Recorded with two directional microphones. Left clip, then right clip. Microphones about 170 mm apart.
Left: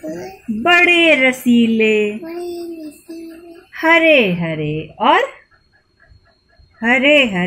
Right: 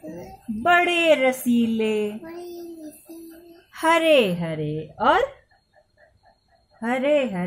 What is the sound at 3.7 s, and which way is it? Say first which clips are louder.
A woman's voice: left 6 dB; 30° right (ahead or behind).